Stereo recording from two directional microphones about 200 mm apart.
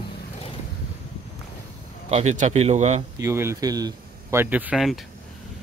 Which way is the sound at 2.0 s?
35° right (ahead or behind).